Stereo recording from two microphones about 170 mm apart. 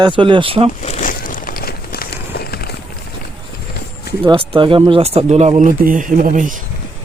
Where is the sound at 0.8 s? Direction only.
45° left (ahead or behind); by 2.8 s 65° left (ahead or behind).